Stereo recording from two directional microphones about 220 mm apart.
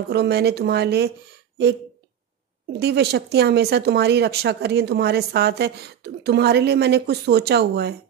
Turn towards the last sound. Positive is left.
turn(degrees=-50)  # may be behind; listen again after turning